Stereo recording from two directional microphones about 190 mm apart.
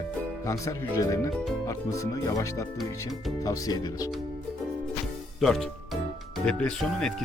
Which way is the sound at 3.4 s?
20° left (ahead or behind).